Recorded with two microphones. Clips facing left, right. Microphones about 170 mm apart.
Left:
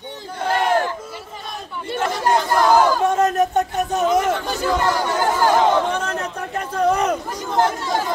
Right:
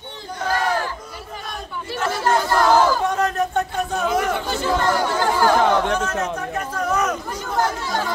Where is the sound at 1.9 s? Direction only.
25° left (ahead or behind).